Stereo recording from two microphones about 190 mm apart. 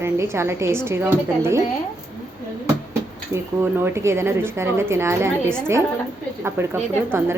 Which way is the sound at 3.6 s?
15° right (ahead or behind).